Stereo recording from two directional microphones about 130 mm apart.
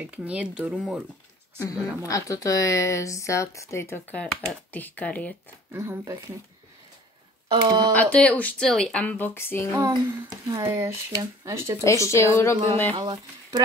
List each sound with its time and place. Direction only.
0.0 s speech: 10° right (ahead or behind)
1.6 s a woman's voice: 25° left (ahead or behind)
5.7 s speech: 20° right (ahead or behind)
7.4 s speech: 35° right (ahead or behind)
7.9 s speech: 10° left (ahead or behind)
9.7 s speech: 20° right (ahead or behind)
11.8 s a woman's voice: 20° left (ahead or behind)
12.9 s speech: 35° right (ahead or behind)